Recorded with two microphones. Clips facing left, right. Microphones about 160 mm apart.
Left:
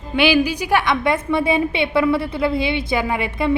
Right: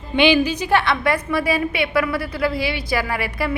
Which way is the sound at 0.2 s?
5° left (ahead or behind).